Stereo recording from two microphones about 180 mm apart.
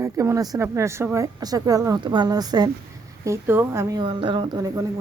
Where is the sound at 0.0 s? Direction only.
15° right (ahead or behind).